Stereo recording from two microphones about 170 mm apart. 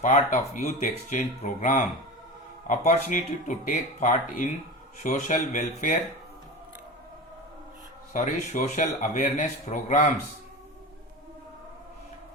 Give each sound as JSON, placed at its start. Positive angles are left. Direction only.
{"t": 0.0, "sound": "a man's voice", "side_deg": 50}
{"t": 8.1, "sound": "a man's voice", "side_deg": 50}